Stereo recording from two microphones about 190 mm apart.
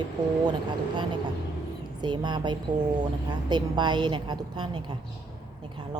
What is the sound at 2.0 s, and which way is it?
Speech, 25° right (ahead or behind).